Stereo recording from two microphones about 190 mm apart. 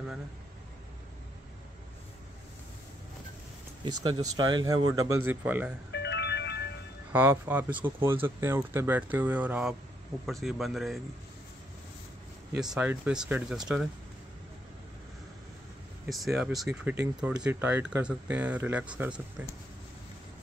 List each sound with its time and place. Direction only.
3.8 s speech: 20° right (ahead or behind)
4.9 s a man's voice: 90° right
5.3 s speech: 10° right (ahead or behind)
5.9 s music: 65° left (ahead or behind)
7.1 s speech: 10° right (ahead or behind)
12.5 s speech: 5° right (ahead or behind)
16.1 s speech: centre (ahead or behind)